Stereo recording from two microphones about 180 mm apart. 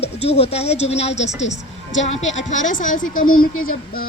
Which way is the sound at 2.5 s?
45° left (ahead or behind).